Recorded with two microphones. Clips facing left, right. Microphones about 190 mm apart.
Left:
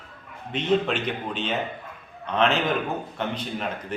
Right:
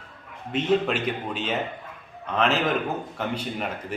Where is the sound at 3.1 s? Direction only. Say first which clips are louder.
Even; 5° right (ahead or behind).